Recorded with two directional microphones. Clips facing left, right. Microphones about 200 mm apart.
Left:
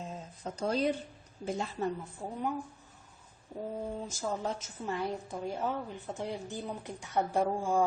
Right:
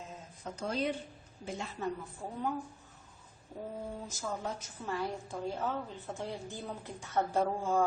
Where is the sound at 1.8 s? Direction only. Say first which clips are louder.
Left 2 dB; 30° left (ahead or behind).